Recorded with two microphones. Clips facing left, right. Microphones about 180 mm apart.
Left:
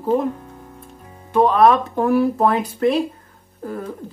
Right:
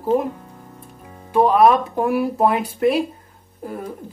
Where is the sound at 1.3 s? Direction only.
5° right (ahead or behind).